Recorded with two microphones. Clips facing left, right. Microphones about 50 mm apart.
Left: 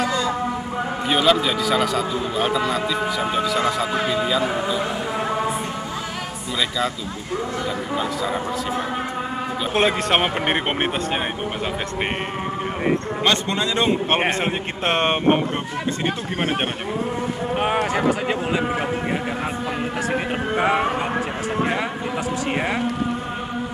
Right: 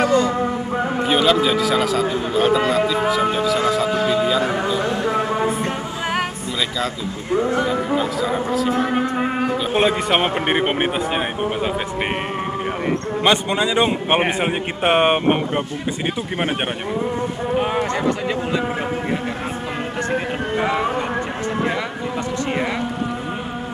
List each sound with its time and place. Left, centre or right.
0.0 s music: right
1.0 s a man's voice: centre
4.1 s speech: centre
7.4 s speech: right
7.9 s speech: centre
9.8 s speech: centre
13.2 s a man's voice: centre
17.7 s speech: left
20.5 s music: left
22.5 s speech: centre